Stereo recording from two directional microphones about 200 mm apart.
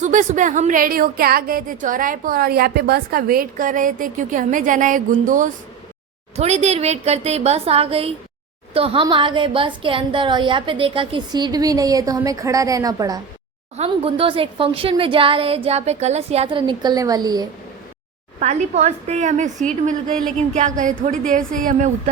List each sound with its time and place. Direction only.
0.0 s a woman's voice: 40° right (ahead or behind); by 13.1 s 20° right (ahead or behind)
13.7 s a woman's voice: 30° right (ahead or behind)
18.3 s a woman's voice: 35° right (ahead or behind)